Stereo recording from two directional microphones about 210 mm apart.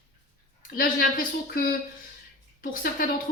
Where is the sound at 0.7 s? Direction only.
40° left (ahead or behind).